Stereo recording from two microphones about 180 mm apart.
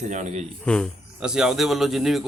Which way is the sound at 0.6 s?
5° left (ahead or behind).